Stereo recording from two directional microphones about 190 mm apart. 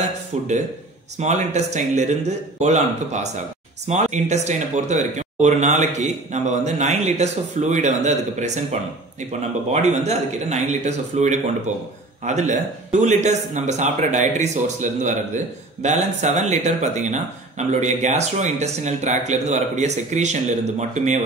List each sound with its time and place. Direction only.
1.1 s a man's voice: 35° right (ahead or behind)
9.7 s a man's voice: 35° right (ahead or behind)